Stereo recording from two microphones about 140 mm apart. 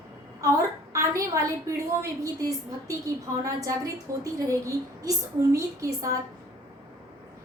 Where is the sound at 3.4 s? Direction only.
25° right (ahead or behind).